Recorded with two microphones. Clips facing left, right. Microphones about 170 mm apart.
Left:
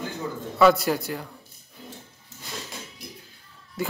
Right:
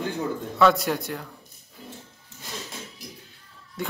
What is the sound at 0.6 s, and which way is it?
Speech, 5° left (ahead or behind).